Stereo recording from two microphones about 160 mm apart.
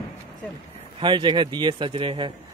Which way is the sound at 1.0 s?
30° right (ahead or behind).